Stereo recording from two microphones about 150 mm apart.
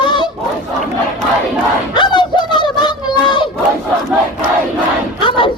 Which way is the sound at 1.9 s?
30° left (ahead or behind).